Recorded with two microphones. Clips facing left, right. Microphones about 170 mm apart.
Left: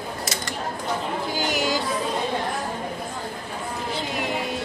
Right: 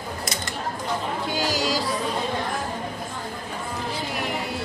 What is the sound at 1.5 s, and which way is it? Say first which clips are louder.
Music: left 2 dB; 25° left (ahead or behind).